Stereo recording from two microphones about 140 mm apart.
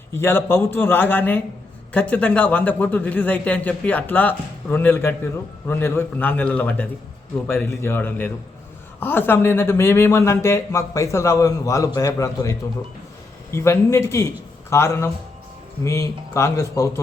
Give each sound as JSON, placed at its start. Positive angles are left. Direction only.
{"t": 0.2, "sound": "a man's voice", "side_deg": 15}